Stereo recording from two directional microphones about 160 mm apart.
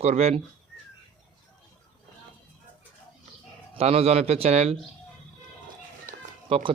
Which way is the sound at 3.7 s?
40° right (ahead or behind).